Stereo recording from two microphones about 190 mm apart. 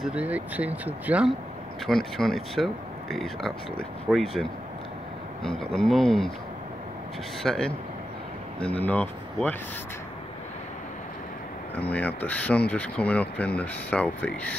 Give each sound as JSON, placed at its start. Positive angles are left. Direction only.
{"t": 0.0, "sound": "speech", "side_deg": -5}
{"t": 7.4, "sound": "speech", "side_deg": 5}
{"t": 8.7, "sound": "speech", "side_deg": 10}
{"t": 11.7, "sound": "speech", "side_deg": 10}